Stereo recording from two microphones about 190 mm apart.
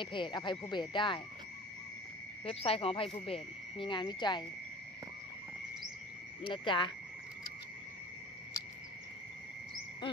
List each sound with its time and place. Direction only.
0.0 s speech: 25° left (ahead or behind)
2.4 s speech: 30° left (ahead or behind)
6.4 s speech: 25° left (ahead or behind)